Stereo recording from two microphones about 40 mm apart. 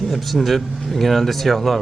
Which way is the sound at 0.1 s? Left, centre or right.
Centre.